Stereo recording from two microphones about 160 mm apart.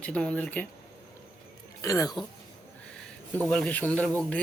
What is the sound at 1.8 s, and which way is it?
Speech, 20° left (ahead or behind).